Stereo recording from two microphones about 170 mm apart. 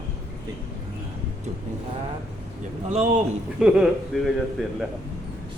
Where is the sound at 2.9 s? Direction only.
40° right (ahead or behind).